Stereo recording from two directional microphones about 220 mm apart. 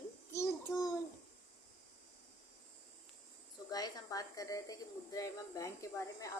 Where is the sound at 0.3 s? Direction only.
15° left (ahead or behind).